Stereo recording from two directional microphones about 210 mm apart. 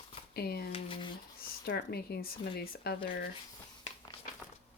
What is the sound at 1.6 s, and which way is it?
Speech, 50° left (ahead or behind).